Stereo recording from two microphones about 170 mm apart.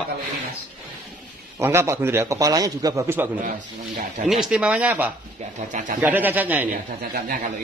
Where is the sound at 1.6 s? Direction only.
15° right (ahead or behind).